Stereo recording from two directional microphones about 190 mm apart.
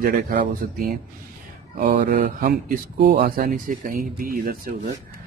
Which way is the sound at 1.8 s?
45° right (ahead or behind).